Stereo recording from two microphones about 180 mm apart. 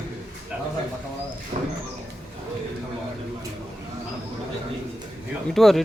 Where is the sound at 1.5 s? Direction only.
35° right (ahead or behind).